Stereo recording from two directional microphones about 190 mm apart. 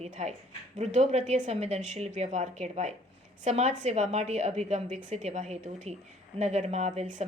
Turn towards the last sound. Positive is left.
turn(degrees=-40)  # may be behind; listen again after turning